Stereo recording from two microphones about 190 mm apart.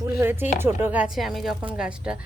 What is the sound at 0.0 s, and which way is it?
Speech, 10° right (ahead or behind).